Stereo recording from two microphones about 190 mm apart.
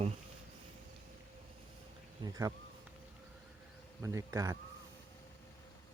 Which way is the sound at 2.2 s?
20° right (ahead or behind).